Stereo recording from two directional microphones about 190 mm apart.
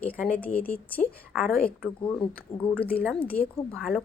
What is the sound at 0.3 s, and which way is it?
A woman's voice, 10° left (ahead or behind).